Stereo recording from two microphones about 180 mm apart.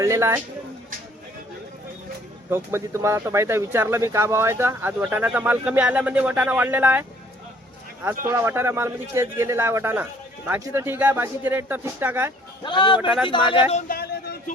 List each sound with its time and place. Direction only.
0.0 s speech: 15° right (ahead or behind)
2.5 s speech: 15° right (ahead or behind)
8.3 s speech: 15° right (ahead or behind)
12.6 s a man's voice: 25° left (ahead or behind)
13.0 s speech: 5° right (ahead or behind)
13.2 s a man's voice: 30° left (ahead or behind)
13.8 s a sound: 60° left (ahead or behind)